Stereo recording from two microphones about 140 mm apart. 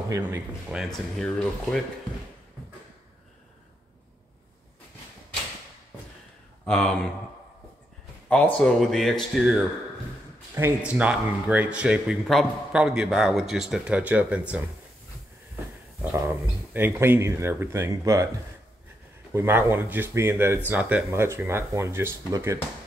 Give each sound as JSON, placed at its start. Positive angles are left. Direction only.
{"t": 0.1, "sound": "speech", "side_deg": -15}
{"t": 0.7, "sound": "a man's voice", "side_deg": 0}
{"t": 6.6, "sound": "speech", "side_deg": 10}
{"t": 8.6, "sound": "a man's voice", "side_deg": 5}
{"t": 10.8, "sound": "a man's voice", "side_deg": -10}
{"t": 16.0, "sound": "speech", "side_deg": -15}
{"t": 19.3, "sound": "speech", "side_deg": -15}